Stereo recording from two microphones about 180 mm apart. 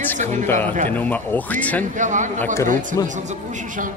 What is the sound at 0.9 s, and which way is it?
Speech, 10° left (ahead or behind).